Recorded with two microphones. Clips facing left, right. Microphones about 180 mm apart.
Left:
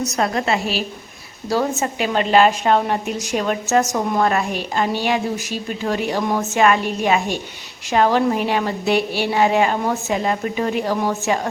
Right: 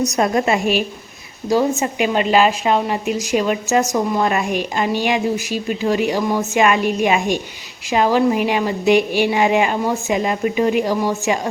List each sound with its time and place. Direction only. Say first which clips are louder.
0.0 s a woman's voice: right 4 dB; 15° right (ahead or behind)